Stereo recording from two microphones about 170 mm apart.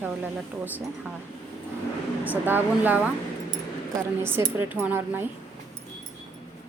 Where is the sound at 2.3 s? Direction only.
10° right (ahead or behind).